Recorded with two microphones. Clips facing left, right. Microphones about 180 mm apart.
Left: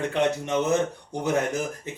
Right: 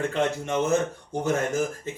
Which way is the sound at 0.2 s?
15° left (ahead or behind).